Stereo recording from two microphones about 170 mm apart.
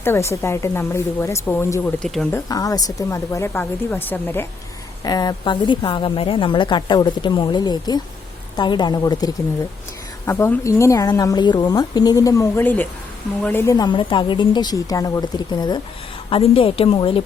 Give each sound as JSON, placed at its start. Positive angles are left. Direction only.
{"t": 0.0, "sound": "speech", "side_deg": 15}
{"t": 2.3, "sound": "speech", "side_deg": 20}
{"t": 5.0, "sound": "a woman's voice", "side_deg": 25}